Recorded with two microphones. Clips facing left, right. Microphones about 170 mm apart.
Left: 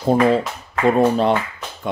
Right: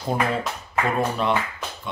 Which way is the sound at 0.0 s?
30° left (ahead or behind).